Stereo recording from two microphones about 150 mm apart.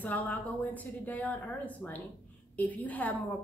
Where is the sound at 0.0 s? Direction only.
10° left (ahead or behind).